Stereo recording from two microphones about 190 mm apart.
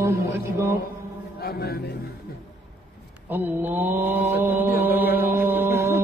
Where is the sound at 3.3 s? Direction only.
10° right (ahead or behind).